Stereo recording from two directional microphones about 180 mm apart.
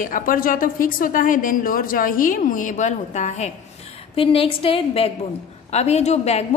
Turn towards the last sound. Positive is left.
turn(degrees=35)  # may be behind; listen again after turning